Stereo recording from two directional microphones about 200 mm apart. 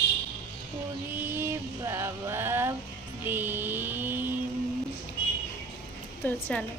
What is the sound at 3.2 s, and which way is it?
Mantra, 10° right (ahead or behind).